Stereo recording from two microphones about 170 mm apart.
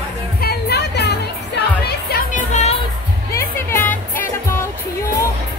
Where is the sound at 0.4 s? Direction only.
70° left (ahead or behind).